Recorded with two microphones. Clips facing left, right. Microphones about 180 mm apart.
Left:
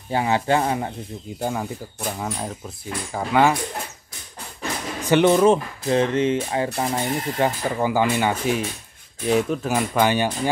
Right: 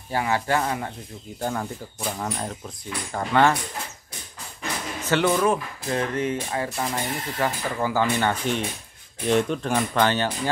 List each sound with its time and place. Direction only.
0.1 s speech: 20° left (ahead or behind)
1.4 s speech: 10° left (ahead or behind)
5.0 s speech: 20° left (ahead or behind)